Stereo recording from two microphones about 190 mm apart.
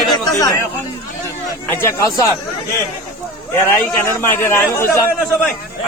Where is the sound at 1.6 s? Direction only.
10° left (ahead or behind).